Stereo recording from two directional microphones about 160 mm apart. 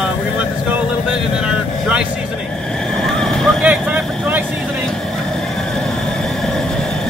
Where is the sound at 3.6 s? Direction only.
10° right (ahead or behind).